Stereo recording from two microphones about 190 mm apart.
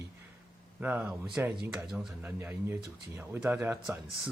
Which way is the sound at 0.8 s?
10° right (ahead or behind).